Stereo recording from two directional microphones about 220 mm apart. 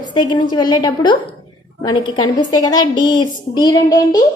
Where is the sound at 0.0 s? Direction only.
20° left (ahead or behind).